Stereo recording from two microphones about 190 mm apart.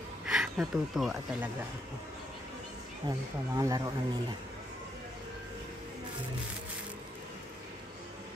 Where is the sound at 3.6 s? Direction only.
20° right (ahead or behind).